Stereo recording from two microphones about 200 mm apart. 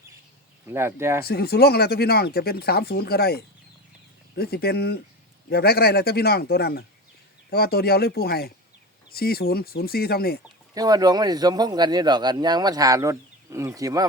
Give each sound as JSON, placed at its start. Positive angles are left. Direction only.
{"t": 0.7, "sound": "speech", "side_deg": -10}
{"t": 1.2, "sound": "speech", "side_deg": 50}
{"t": 10.8, "sound": "speech", "side_deg": -20}